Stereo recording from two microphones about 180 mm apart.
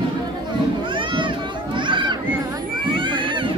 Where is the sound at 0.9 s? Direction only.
25° right (ahead or behind).